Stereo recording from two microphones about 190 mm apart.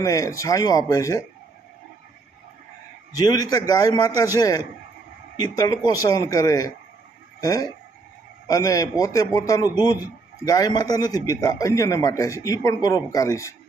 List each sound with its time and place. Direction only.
0.0 s a man's voice: 20° left (ahead or behind)
3.2 s a man's voice: 20° left (ahead or behind)